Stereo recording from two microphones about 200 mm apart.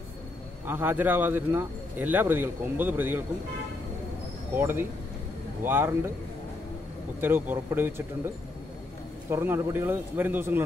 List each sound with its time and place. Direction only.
0.7 s speech: 10° right (ahead or behind)
4.6 s speech: 10° right (ahead or behind)
7.2 s speech: 10° right (ahead or behind)
9.3 s speech: 10° right (ahead or behind)